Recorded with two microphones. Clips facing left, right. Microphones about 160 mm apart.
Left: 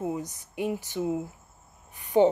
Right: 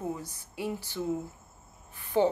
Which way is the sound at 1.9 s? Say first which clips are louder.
Left 5 dB; 15° left (ahead or behind).